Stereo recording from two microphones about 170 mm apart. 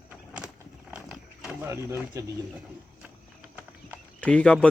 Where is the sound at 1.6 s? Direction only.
15° right (ahead or behind).